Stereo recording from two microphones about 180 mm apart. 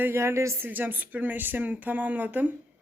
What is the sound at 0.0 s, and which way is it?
A woman's voice, 15° right (ahead or behind).